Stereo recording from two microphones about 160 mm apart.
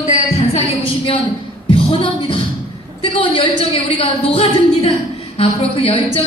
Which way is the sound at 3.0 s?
35° left (ahead or behind).